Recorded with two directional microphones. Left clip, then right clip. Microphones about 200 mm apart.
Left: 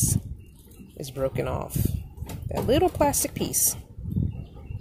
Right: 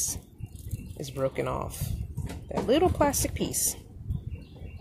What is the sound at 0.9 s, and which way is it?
Speech, 10° left (ahead or behind).